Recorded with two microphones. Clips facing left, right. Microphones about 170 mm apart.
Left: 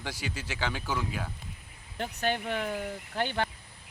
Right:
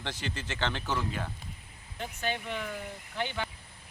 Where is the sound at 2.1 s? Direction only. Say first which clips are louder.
Left 4 dB; 60° left (ahead or behind).